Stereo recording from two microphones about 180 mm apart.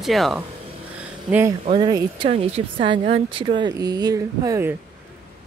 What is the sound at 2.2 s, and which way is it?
Speech, 35° right (ahead or behind).